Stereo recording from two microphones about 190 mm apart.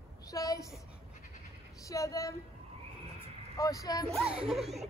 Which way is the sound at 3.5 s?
20° left (ahead or behind).